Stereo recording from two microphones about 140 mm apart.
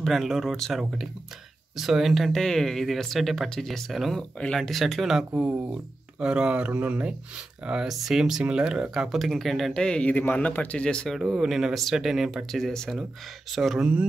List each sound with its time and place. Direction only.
0.0 s speech: centre (ahead or behind)